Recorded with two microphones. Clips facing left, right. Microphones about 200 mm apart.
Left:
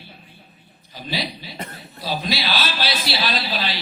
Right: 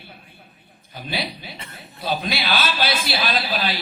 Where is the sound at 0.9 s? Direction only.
55° right (ahead or behind).